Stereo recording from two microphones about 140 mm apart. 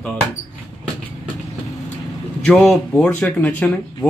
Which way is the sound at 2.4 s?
5° left (ahead or behind).